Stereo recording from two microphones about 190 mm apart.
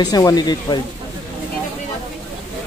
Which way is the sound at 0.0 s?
20° left (ahead or behind).